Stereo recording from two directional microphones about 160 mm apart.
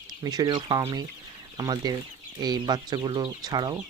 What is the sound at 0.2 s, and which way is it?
Speech, 25° right (ahead or behind).